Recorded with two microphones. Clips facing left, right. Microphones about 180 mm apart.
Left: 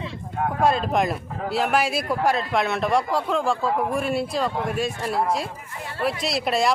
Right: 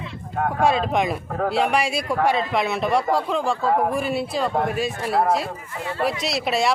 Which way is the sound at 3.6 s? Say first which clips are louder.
Right 3 dB; 50° right (ahead or behind).